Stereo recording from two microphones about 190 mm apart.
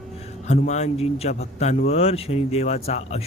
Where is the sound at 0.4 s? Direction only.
35° left (ahead or behind).